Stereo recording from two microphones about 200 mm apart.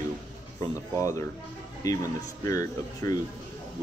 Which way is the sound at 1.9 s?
15° left (ahead or behind).